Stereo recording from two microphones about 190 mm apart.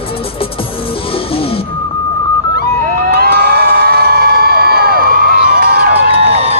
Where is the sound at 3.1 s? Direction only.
55° right (ahead or behind).